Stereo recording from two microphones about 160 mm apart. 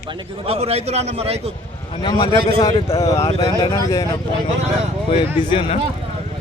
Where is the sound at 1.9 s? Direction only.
30° left (ahead or behind).